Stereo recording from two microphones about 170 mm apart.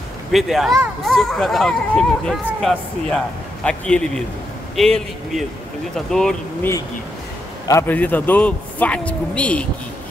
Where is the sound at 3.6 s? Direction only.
5° left (ahead or behind).